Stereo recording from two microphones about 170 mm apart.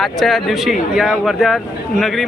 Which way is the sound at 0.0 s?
Centre (ahead or behind).